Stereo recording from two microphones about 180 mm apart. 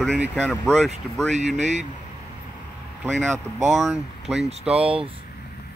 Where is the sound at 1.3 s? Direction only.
40° right (ahead or behind).